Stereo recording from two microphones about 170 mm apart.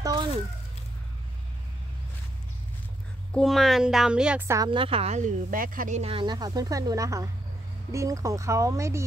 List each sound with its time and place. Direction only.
0.0 s a sound: 20° right (ahead or behind)
3.3 s speech: centre (ahead or behind)
4.6 s speech: 30° right (ahead or behind)